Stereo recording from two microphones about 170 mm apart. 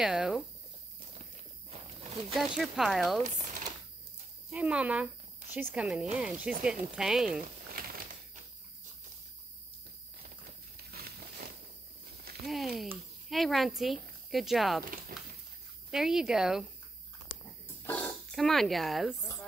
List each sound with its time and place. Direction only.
0.0 s speech: 5° right (ahead or behind)
1.7 s wild animals: 35° right (ahead or behind)
2.3 s speech: centre (ahead or behind)
3.3 s a sound: 45° right (ahead or behind)
4.5 s speech: 5° right (ahead or behind)
7.8 s crushing: 60° right (ahead or behind)
12.4 s speech: centre (ahead or behind)
15.9 s speech: 5° right (ahead or behind)
17.8 s speech: 5° left (ahead or behind)